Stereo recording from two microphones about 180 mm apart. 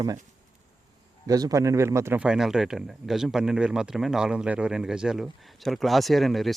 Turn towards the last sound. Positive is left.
turn(degrees=0)  # may be behind; listen again after turning